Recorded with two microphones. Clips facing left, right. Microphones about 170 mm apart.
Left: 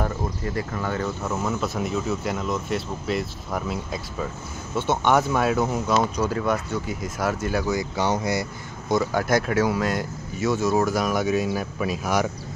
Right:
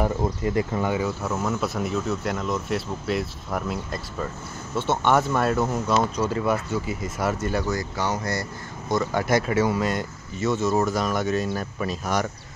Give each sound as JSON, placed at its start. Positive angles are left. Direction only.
{"t": 0.2, "sound": "speech", "side_deg": -20}
{"t": 0.9, "sound": "speech", "side_deg": -5}